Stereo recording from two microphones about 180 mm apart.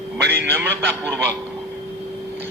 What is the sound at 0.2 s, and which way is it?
Music, 70° right (ahead or behind).